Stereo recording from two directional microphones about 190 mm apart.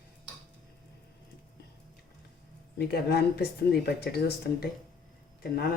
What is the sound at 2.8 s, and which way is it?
Speech, 55° left (ahead or behind).